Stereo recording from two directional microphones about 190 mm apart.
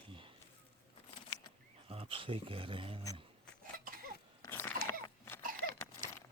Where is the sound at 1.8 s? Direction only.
30° right (ahead or behind).